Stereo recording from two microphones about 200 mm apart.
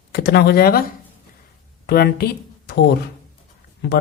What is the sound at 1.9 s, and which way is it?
Speech, 50° left (ahead or behind).